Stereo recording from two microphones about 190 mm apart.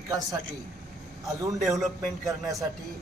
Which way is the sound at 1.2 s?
15° right (ahead or behind).